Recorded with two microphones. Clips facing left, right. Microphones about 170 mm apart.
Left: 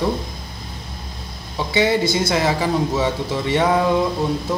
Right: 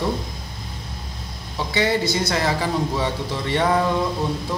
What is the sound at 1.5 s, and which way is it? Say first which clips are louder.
Speech: left 3 dB; 20° left (ahead or behind).